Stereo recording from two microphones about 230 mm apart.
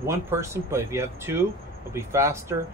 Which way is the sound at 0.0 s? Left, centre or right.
Centre.